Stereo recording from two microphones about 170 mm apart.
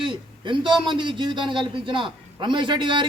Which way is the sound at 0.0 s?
30° right (ahead or behind).